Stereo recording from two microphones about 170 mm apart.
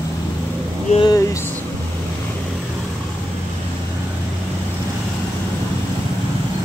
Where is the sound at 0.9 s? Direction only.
20° left (ahead or behind).